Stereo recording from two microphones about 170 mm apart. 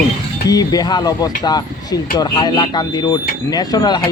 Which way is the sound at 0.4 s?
25° left (ahead or behind).